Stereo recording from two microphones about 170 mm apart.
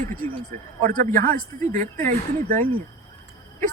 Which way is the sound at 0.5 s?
45° right (ahead or behind).